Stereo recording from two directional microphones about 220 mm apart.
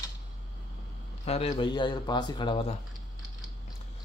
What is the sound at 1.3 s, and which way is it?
Speech, 25° left (ahead or behind).